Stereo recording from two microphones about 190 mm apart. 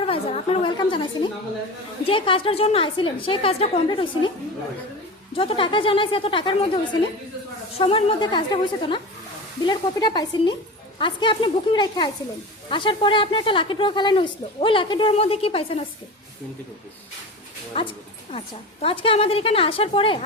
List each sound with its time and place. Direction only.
0.0 s a woman's voice: 30° left (ahead or behind)
5.4 s speech: 30° left (ahead or behind)
7.8 s speech: 30° left (ahead or behind)
17.7 s speech: 30° left (ahead or behind)